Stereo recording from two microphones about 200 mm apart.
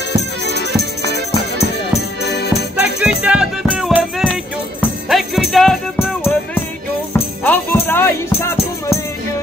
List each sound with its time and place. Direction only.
2.2 s music: 55° left (ahead or behind)
2.8 s music: 5° right (ahead or behind)
5.9 s music: 10° left (ahead or behind)